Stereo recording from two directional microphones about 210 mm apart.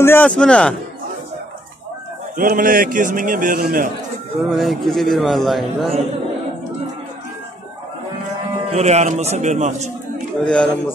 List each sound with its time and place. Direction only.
0.0 s a man's voice: 10° left (ahead or behind)
2.3 s a man's voice: 40° right (ahead or behind)
4.4 s a man's voice: centre (ahead or behind)
8.6 s a man's voice: 30° right (ahead or behind)
10.4 s a man's voice: 5° left (ahead or behind)